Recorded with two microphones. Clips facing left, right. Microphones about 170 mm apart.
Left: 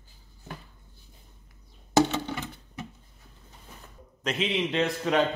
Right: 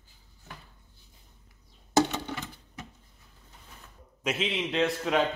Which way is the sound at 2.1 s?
Centre (ahead or behind).